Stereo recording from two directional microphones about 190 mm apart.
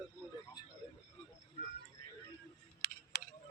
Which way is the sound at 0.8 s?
25° left (ahead or behind).